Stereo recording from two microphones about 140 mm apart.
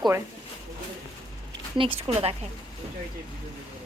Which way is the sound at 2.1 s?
45° right (ahead or behind).